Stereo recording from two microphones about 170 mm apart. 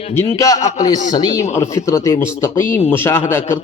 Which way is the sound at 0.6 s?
45° left (ahead or behind).